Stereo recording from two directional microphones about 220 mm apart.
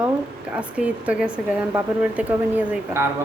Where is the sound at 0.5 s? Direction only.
5° right (ahead or behind).